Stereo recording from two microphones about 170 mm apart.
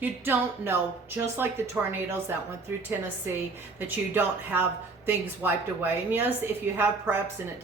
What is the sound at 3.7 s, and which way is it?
A woman's voice, 10° right (ahead or behind).